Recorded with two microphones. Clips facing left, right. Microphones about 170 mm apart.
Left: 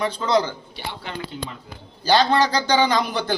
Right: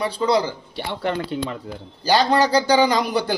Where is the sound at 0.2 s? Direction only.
10° right (ahead or behind).